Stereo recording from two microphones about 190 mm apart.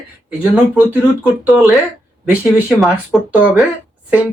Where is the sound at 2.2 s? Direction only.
5° right (ahead or behind).